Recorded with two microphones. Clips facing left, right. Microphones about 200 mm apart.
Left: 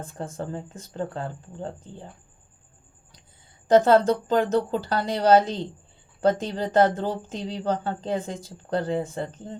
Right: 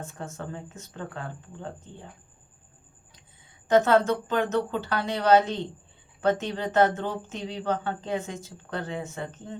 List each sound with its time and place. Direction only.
0.0 s speech: 30° left (ahead or behind)
3.7 s speech: 30° left (ahead or behind)